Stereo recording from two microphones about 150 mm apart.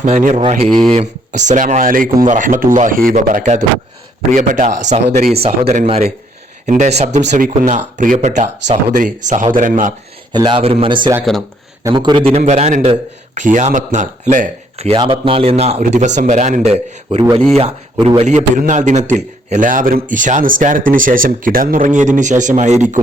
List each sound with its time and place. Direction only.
0.0 s a man's voice: 60° right (ahead or behind); by 6.1 s 45° right (ahead or behind)
6.7 s speech: 60° right (ahead or behind)
7.4 s a man's voice: 65° right (ahead or behind)
10.3 s a man's voice: 30° right (ahead or behind)
11.8 s speech: 25° right (ahead or behind)
12.4 s speech: 50° right (ahead or behind)
13.3 s a man's voice: 55° right (ahead or behind)
14.9 s a man's voice: 35° right (ahead or behind)
15.8 s a man's voice: 55° right (ahead or behind)